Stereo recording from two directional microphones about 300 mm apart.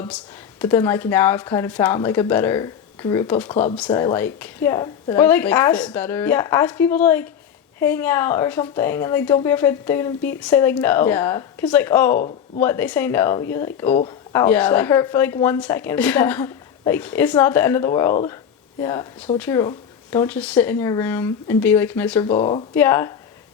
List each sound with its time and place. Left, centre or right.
0.6 s speech: centre
22.4 s speech: centre
22.7 s speech: centre